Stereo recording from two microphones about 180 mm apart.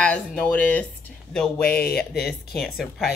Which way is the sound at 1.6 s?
60° left (ahead or behind).